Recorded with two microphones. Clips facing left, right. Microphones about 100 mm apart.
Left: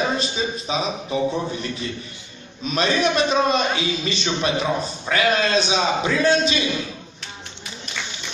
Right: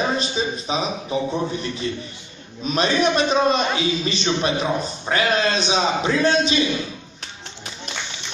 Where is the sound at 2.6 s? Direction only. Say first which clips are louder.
Right 1 dB; 35° right (ahead or behind).